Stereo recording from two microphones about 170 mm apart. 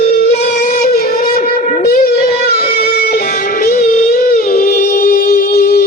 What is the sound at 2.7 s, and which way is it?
Music, 65° left (ahead or behind).